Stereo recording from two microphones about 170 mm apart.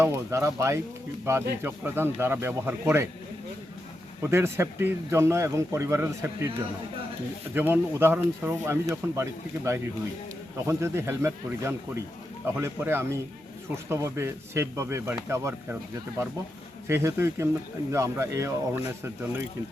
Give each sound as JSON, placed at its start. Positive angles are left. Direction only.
{"t": 0.0, "sound": "speech", "side_deg": -15}
{"t": 4.2, "sound": "speech", "side_deg": -15}
{"t": 7.5, "sound": "speech", "side_deg": -10}